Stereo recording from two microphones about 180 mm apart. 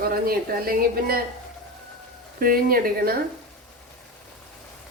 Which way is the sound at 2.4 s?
55° right (ahead or behind).